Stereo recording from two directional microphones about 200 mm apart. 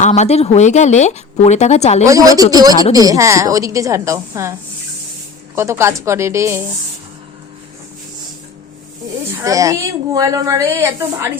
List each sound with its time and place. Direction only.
0.0 s speech: 35° left (ahead or behind)
2.0 s a woman's voice: 15° right (ahead or behind)
5.5 s a woman's voice: 15° right (ahead or behind)
9.4 s a woman's voice: 15° right (ahead or behind)